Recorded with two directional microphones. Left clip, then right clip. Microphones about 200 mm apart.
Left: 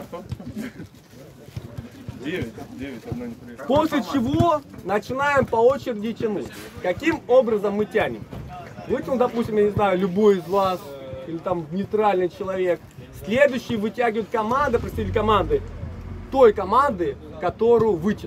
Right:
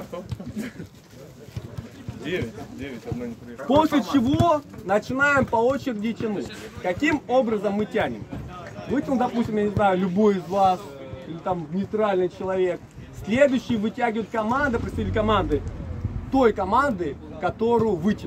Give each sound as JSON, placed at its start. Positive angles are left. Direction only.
{"t": 2.2, "sound": "a man's voice", "side_deg": -45}
{"t": 3.8, "sound": "speech", "side_deg": 20}
{"t": 12.0, "sound": "speech", "side_deg": 45}